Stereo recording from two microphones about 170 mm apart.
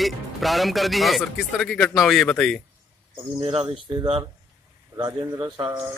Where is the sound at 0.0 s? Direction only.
Centre (ahead or behind).